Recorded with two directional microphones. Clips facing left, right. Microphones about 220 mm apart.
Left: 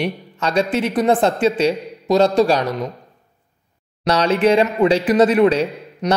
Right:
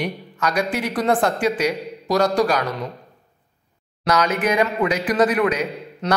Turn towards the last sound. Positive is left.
turn(degrees=15)  # may be behind; listen again after turning